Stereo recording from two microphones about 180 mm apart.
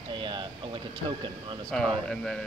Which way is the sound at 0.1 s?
25° right (ahead or behind).